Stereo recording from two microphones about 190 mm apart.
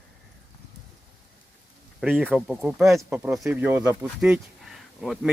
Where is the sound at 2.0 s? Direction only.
5° right (ahead or behind).